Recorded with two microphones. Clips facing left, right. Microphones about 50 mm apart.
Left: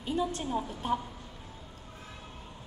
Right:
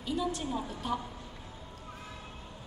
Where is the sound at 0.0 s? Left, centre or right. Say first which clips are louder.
Left 1 dB; left.